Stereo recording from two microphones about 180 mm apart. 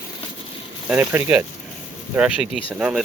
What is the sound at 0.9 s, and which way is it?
Speech, 10° right (ahead or behind).